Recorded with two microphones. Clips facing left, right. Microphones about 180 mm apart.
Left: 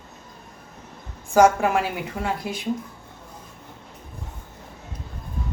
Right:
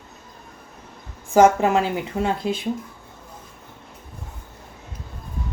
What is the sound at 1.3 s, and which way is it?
Speech, 20° right (ahead or behind).